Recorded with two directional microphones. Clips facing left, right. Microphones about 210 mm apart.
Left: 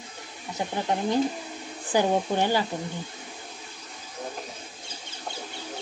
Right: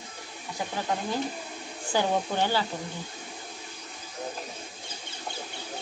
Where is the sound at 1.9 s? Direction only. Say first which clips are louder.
Left 3 dB; 15° left (ahead or behind).